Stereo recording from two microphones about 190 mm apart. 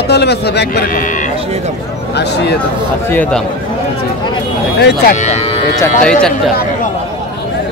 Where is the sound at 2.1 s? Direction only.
60° left (ahead or behind).